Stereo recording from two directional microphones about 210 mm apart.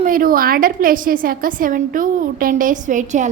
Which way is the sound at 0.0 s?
40° right (ahead or behind).